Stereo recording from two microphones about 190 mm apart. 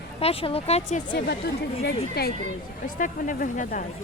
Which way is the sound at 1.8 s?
55° left (ahead or behind).